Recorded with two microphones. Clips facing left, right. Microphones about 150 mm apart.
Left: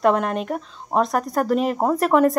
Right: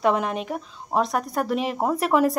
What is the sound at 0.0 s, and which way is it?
A woman's voice, centre (ahead or behind).